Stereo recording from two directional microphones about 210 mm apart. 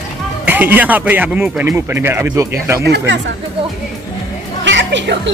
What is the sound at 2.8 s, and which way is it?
Speech, 55° right (ahead or behind).